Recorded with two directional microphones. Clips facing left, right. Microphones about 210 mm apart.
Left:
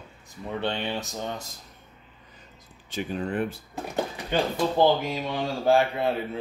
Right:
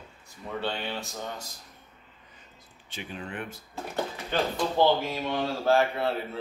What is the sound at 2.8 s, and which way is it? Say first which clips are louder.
Speech: left 9 dB; 40° left (ahead or behind).